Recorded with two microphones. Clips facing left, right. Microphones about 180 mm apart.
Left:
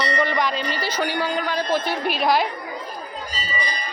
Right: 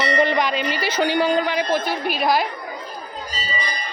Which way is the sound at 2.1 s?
5° right (ahead or behind).